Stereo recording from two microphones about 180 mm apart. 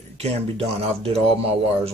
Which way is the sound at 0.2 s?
35° right (ahead or behind).